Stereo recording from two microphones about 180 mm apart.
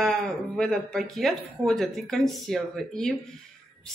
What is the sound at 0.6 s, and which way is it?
Speech, 5° left (ahead or behind).